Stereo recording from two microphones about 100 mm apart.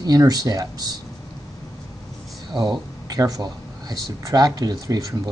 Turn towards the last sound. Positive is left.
turn(degrees=-40)  # may be behind; listen again after turning